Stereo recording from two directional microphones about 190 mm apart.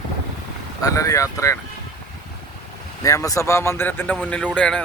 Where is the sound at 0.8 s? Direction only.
15° left (ahead or behind).